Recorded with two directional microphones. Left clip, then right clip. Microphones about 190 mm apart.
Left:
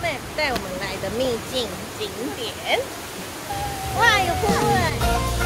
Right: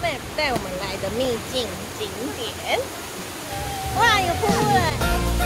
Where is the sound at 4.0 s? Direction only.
10° right (ahead or behind).